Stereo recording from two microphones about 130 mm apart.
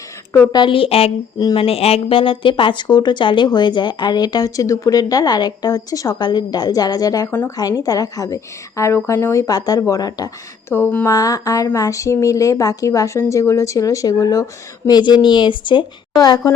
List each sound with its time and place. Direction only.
0.5 s a woman's voice: 40° left (ahead or behind)
10.8 s speech: 15° left (ahead or behind)
11.1 s speech: 30° left (ahead or behind)